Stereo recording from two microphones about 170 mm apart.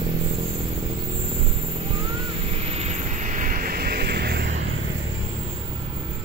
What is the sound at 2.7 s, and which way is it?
Vehicle, 40° right (ahead or behind).